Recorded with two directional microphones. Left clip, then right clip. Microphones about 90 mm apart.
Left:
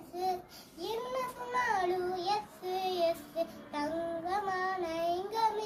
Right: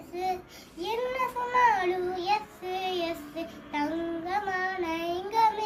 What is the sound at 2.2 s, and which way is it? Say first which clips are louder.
Child singing: right 5 dB; 30° left (ahead or behind).